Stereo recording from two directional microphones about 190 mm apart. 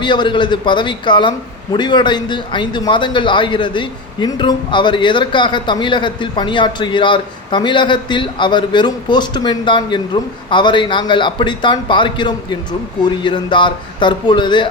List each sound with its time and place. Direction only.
0.0 s a man's voice: 25° left (ahead or behind)